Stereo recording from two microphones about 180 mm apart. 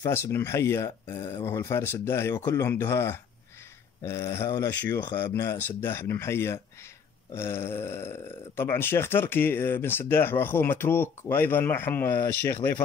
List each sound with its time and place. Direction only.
0.0 s speech: 15° left (ahead or behind)